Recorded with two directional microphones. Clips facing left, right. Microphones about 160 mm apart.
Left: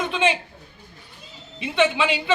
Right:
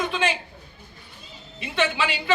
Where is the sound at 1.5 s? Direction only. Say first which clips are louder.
Left 4 dB; 20° left (ahead or behind).